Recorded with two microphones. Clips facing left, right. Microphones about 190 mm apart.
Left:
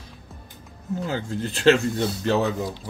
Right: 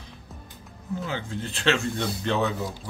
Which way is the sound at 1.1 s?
40° left (ahead or behind).